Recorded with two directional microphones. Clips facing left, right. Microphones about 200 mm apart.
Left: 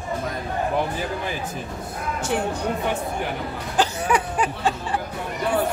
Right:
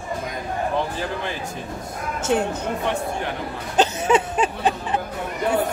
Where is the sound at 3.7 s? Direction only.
20° right (ahead or behind).